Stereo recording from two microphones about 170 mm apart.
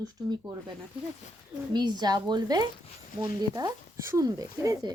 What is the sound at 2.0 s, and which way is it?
Speech, 25° right (ahead or behind).